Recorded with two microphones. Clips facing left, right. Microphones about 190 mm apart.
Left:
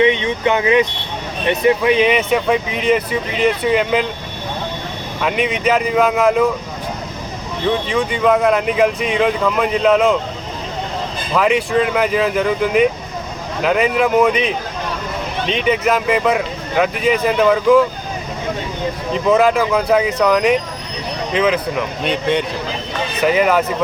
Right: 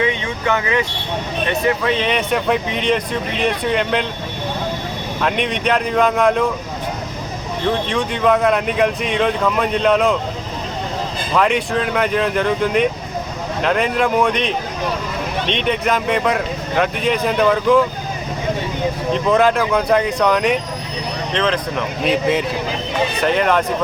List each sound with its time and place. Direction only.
0.0 s speech: 20° left (ahead or behind); by 4.0 s 5° left (ahead or behind)
5.2 s speech: 5° left (ahead or behind)
7.7 s speech: centre (ahead or behind)
11.3 s speech: centre (ahead or behind)
19.1 s speech: centre (ahead or behind)